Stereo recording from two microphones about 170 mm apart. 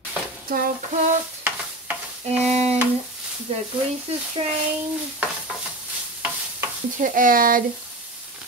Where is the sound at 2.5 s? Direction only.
40° right (ahead or behind).